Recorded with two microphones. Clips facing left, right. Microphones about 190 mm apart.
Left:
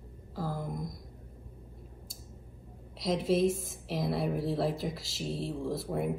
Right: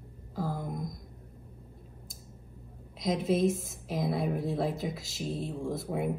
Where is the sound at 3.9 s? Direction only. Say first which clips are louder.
Right 1 dB; centre (ahead or behind).